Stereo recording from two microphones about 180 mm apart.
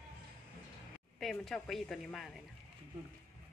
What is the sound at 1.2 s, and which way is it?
A woman's voice, centre (ahead or behind).